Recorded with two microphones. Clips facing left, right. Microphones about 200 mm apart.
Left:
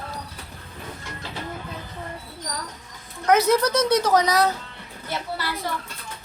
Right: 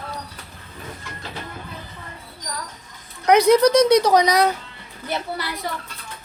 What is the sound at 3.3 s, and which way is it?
A woman's voice, 15° right (ahead or behind).